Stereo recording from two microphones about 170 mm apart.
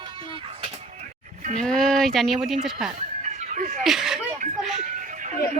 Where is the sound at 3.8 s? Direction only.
5° right (ahead or behind).